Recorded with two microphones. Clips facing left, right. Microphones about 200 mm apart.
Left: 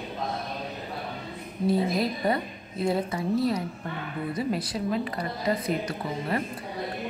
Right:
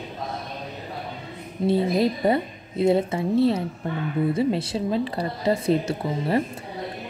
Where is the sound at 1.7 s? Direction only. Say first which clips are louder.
Right 4 dB; 25° right (ahead or behind).